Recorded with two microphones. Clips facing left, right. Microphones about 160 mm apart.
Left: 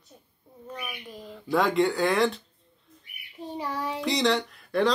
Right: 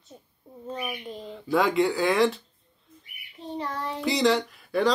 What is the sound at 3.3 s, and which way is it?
Child singing, 10° left (ahead or behind).